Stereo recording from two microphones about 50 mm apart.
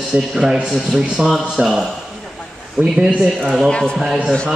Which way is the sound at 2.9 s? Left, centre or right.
Centre.